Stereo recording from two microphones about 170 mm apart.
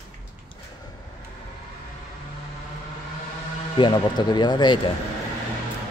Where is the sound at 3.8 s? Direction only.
25° left (ahead or behind).